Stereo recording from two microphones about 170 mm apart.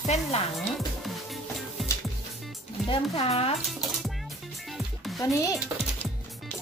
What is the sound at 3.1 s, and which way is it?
Speech, 35° left (ahead or behind).